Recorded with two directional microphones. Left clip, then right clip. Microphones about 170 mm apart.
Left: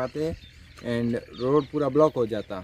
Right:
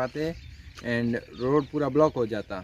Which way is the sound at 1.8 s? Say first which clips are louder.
Left 2 dB; centre (ahead or behind).